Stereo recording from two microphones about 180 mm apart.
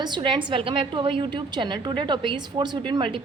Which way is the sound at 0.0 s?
25° right (ahead or behind).